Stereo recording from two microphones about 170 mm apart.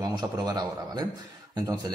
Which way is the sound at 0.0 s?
25° right (ahead or behind).